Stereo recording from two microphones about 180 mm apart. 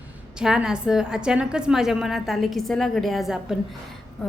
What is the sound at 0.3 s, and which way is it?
A woman's voice, 5° right (ahead or behind).